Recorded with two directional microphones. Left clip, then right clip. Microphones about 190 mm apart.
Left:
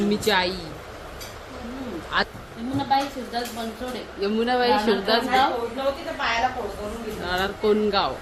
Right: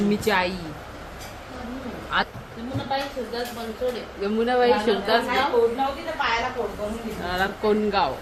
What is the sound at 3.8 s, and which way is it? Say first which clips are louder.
Speech: right 9 dB; 65° left (ahead or behind).